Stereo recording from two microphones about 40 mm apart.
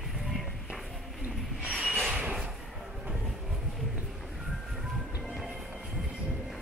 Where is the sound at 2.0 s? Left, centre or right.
Right.